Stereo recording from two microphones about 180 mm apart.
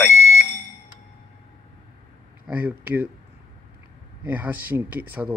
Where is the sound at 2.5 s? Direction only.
10° right (ahead or behind).